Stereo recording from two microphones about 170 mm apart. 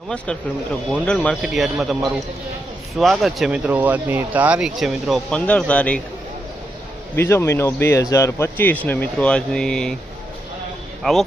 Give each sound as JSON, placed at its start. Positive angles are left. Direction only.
{"t": 0.1, "sound": "speech", "side_deg": 5}
{"t": 7.2, "sound": "speech", "side_deg": 15}
{"t": 11.0, "sound": "speech", "side_deg": 0}